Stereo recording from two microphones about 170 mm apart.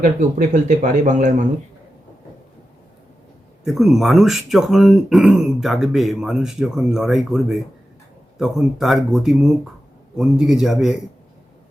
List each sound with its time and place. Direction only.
0.0 s speech: 45° right (ahead or behind)
3.6 s speech: centre (ahead or behind)